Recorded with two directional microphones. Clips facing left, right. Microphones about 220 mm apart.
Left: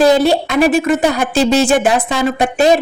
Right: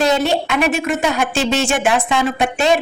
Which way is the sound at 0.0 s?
35° left (ahead or behind).